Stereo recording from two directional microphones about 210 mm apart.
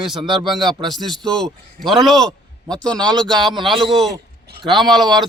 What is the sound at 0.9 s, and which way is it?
A man's voice, centre (ahead or behind).